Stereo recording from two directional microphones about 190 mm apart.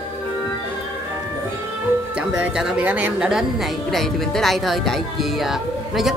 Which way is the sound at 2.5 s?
5° right (ahead or behind).